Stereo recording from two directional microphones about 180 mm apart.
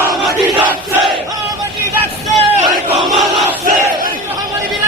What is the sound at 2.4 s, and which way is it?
Battle cry, 35° right (ahead or behind).